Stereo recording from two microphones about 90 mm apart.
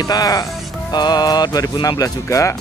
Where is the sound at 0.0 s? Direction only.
45° left (ahead or behind).